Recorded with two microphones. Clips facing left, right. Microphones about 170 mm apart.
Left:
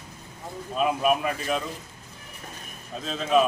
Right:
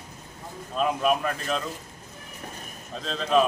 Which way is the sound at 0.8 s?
5° left (ahead or behind).